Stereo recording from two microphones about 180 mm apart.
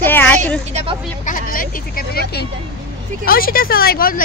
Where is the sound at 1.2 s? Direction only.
50° left (ahead or behind).